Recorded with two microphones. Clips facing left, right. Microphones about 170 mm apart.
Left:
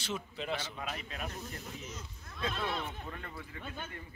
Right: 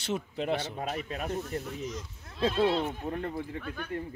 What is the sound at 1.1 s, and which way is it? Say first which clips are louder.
Speech: right 8 dB; 50° right (ahead or behind).